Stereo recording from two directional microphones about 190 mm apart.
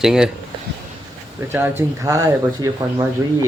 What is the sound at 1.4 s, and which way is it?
Speech, 10° right (ahead or behind).